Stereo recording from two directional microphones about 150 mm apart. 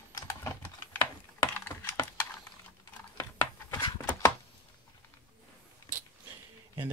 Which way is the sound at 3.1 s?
20° left (ahead or behind).